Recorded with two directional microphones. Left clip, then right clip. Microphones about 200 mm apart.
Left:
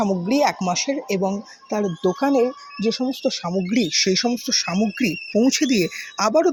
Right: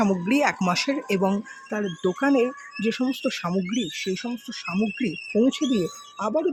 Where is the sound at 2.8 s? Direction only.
25° right (ahead or behind).